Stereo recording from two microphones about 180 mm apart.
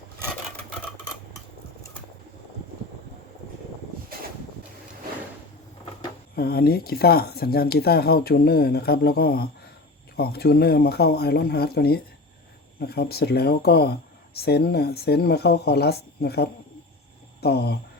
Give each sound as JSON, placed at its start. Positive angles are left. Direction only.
{"t": 6.3, "sound": "speech", "side_deg": 60}